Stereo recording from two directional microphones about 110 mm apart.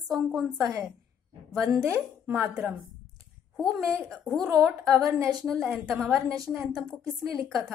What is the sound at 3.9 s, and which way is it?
Speech, 5° left (ahead or behind).